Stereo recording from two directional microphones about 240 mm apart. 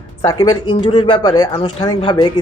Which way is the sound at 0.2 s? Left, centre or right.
Centre.